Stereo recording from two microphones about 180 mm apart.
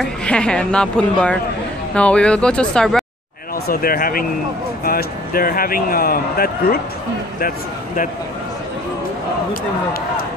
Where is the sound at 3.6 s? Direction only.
55° left (ahead or behind).